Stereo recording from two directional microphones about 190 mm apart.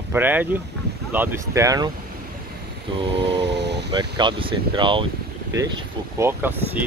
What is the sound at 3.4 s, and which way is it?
Vehicle, 65° right (ahead or behind).